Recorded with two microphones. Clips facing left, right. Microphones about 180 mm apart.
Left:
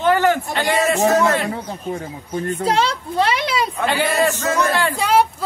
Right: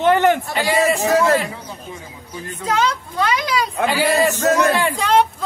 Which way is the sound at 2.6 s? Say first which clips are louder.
Right 1 dB; 30° left (ahead or behind).